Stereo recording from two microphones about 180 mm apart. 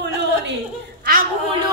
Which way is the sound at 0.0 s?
75° right (ahead or behind).